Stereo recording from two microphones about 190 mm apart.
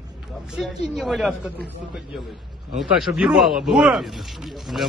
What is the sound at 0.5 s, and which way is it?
Speech, centre (ahead or behind).